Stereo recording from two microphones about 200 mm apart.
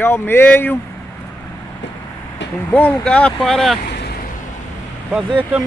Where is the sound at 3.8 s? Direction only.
50° left (ahead or behind).